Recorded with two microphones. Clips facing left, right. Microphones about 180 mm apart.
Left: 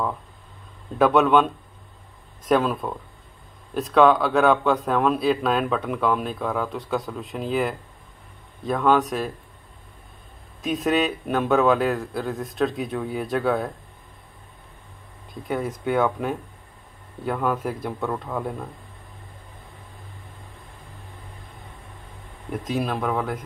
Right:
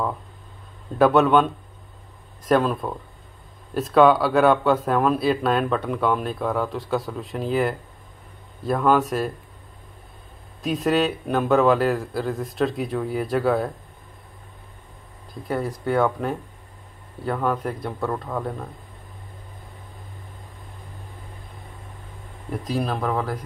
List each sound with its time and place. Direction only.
0.9 s speech: centre (ahead or behind)
10.6 s speech: centre (ahead or behind)
15.4 s speech: centre (ahead or behind)
22.8 s speech: centre (ahead or behind)